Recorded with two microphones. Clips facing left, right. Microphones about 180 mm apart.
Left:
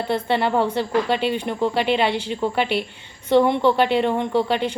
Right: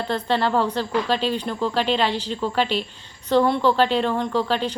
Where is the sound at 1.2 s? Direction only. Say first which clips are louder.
Left 1 dB; 60° left (ahead or behind).